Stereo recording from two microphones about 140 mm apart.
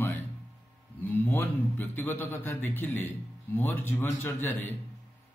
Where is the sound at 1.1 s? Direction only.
15° left (ahead or behind).